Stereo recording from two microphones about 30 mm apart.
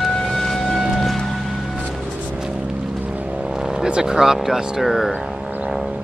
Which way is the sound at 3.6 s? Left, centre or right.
Centre.